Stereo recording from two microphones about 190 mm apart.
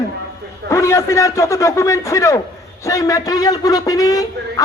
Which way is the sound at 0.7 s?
15° left (ahead or behind).